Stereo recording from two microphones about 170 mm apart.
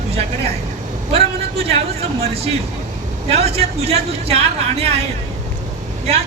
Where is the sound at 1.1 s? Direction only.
35° right (ahead or behind).